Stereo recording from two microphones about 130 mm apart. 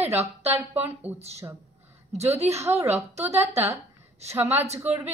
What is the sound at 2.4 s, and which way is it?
Speech, 20° right (ahead or behind).